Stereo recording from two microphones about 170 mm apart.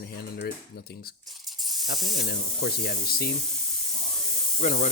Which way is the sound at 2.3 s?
70° left (ahead or behind).